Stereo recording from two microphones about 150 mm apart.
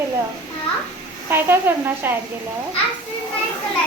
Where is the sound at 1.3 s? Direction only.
15° right (ahead or behind).